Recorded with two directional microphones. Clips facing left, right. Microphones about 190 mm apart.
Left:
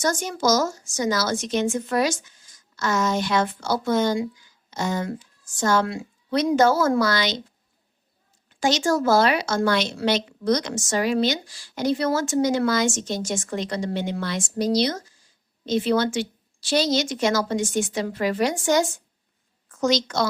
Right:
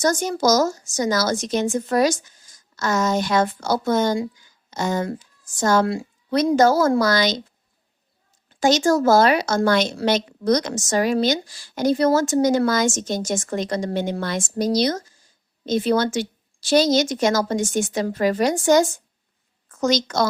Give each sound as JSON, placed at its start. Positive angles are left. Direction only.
{"t": 0.0, "sound": "a woman's voice", "side_deg": -40}
{"t": 8.6, "sound": "a woman's voice", "side_deg": -45}